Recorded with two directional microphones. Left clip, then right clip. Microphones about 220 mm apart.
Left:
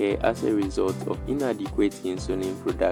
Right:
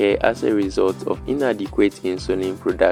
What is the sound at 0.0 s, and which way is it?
Speech, 20° right (ahead or behind).